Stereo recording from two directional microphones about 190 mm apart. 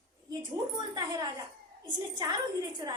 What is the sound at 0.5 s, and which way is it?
A woman's voice, 20° right (ahead or behind).